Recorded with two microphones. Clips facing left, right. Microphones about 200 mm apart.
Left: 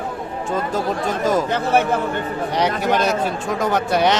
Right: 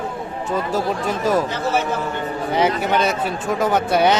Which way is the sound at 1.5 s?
60° left (ahead or behind).